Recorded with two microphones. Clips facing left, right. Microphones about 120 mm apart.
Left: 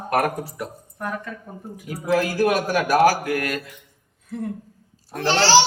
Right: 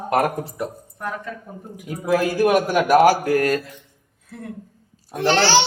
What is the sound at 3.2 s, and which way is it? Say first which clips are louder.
Mantra: right 6 dB; 35° right (ahead or behind).